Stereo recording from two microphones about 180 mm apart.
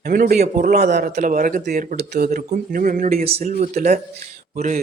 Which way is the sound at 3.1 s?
35° right (ahead or behind).